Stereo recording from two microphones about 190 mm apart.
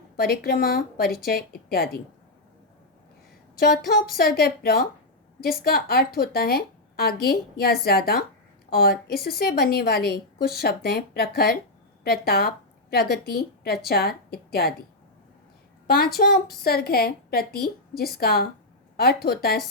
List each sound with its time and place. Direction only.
0.2 s a woman's voice: 55° left (ahead or behind)
3.6 s a woman's voice: 50° left (ahead or behind)
16.1 s a woman's voice: 50° left (ahead or behind)